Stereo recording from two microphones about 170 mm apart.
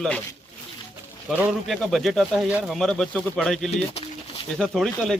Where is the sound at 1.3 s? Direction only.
10° right (ahead or behind).